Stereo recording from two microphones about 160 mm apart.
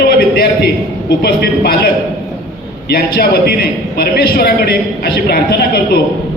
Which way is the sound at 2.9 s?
80° left.